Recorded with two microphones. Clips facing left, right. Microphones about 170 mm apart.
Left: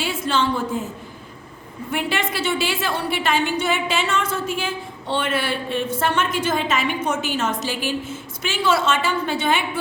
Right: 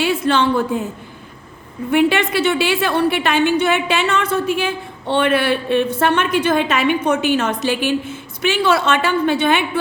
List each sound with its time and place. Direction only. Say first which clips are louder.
0.0 s a woman's voice: right 6 dB; 60° right (ahead or behind)
1.9 s a woman's voice: right 9 dB; 65° right (ahead or behind)